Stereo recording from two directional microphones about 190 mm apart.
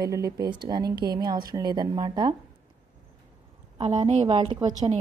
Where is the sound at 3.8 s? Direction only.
30° right (ahead or behind).